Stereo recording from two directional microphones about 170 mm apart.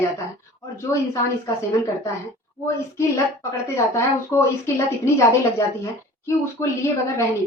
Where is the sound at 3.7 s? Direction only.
15° left (ahead or behind).